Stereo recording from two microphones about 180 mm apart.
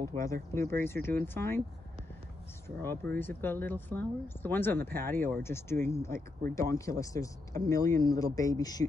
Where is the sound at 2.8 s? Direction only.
10° left (ahead or behind).